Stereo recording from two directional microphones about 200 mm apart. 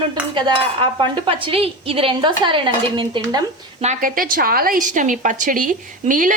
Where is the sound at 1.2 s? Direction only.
25° right (ahead or behind).